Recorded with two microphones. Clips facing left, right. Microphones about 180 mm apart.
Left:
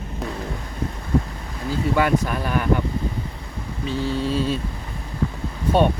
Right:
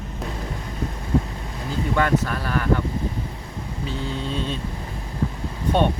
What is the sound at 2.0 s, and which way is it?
Speech, 10° left (ahead or behind).